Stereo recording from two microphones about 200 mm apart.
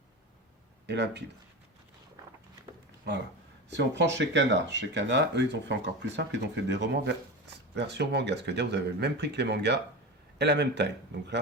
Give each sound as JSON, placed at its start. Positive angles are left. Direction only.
{"t": 0.9, "sound": "speech", "side_deg": -60}
{"t": 3.8, "sound": "speech", "side_deg": -60}